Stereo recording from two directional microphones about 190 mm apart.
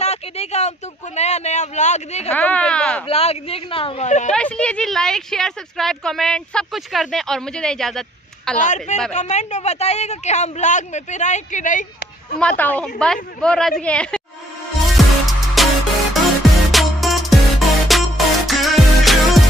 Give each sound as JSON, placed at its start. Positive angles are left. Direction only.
{"t": 0.0, "sound": "speech", "side_deg": 35}
{"t": 2.3, "sound": "speech", "side_deg": 10}
{"t": 3.1, "sound": "speech", "side_deg": 30}
{"t": 4.3, "sound": "a woman's voice", "side_deg": 5}
{"t": 8.5, "sound": "speech", "side_deg": 40}
{"t": 12.4, "sound": "a woman's voice", "side_deg": 5}
{"t": 14.9, "sound": "music", "side_deg": 0}